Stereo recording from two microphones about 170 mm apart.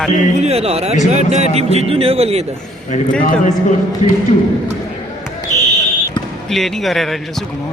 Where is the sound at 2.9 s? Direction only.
50° left (ahead or behind).